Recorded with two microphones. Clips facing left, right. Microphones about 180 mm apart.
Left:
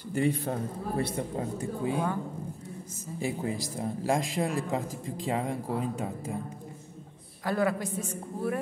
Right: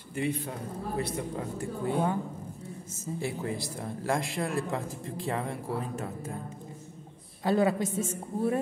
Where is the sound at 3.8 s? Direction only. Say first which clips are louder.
Left 3 dB; 15° left (ahead or behind).